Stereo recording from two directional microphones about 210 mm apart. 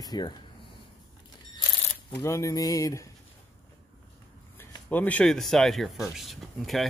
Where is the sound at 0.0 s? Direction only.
20° left (ahead or behind).